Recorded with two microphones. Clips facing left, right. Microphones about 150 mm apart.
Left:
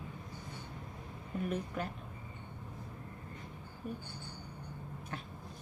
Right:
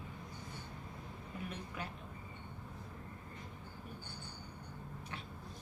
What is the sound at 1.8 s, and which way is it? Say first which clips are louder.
Speech: left 6 dB; 45° left (ahead or behind).